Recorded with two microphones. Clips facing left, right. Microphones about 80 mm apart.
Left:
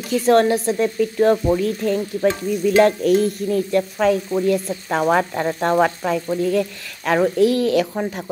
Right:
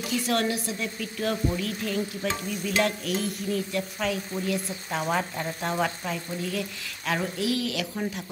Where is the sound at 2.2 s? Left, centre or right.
Left.